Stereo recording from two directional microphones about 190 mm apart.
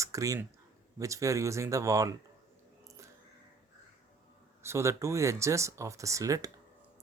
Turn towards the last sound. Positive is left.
turn(degrees=-15)  # may be behind; listen again after turning